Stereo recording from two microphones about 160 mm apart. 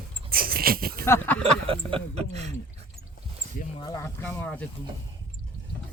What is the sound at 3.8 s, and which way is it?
Speech, 20° left (ahead or behind).